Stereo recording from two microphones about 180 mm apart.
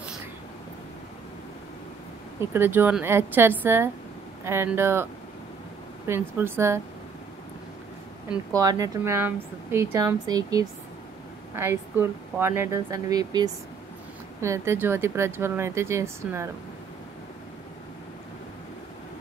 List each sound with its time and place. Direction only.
2.5 s speech: 10° right (ahead or behind)
6.0 s speech: 10° right (ahead or behind)
8.5 s a woman's voice: 20° right (ahead or behind)